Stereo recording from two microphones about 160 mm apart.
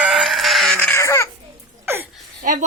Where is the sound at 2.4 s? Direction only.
55° right (ahead or behind).